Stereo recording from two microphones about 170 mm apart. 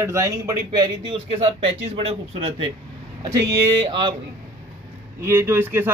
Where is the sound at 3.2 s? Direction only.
25° right (ahead or behind).